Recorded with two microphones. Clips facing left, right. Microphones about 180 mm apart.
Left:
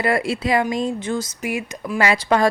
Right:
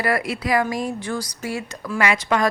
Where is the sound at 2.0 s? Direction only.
35° left (ahead or behind).